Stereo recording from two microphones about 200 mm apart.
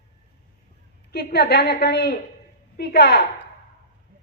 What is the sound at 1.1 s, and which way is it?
A woman's voice, 55° left (ahead or behind).